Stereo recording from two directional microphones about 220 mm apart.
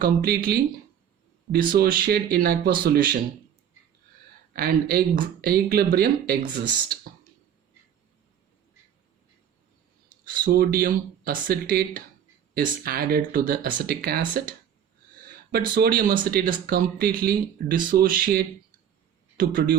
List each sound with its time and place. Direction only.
0.0 s speech: 40° right (ahead or behind)
1.7 s speech: 40° right (ahead or behind)
4.5 s speech: 45° right (ahead or behind)
10.4 s speech: 40° right (ahead or behind)
15.7 s speech: 45° right (ahead or behind)